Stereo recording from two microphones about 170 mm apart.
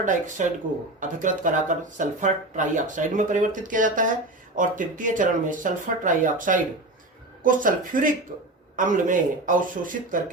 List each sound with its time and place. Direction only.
0.0 s speech: 50° right (ahead or behind)